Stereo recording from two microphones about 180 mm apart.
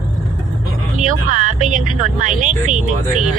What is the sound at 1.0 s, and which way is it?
Vehicle, 45° right (ahead or behind).